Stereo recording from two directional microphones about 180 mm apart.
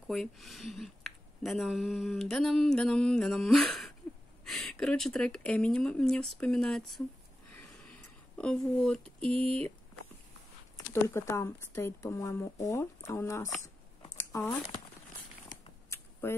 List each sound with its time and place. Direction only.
0.1 s speech: centre (ahead or behind)
8.4 s speech: 5° left (ahead or behind)
10.9 s speech: 15° left (ahead or behind)
15.4 s a sound: 15° left (ahead or behind)